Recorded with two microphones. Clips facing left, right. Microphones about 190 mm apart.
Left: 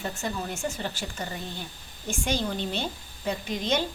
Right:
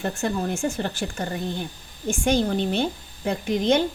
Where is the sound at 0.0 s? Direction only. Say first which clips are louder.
Right 7 dB; 50° right (ahead or behind).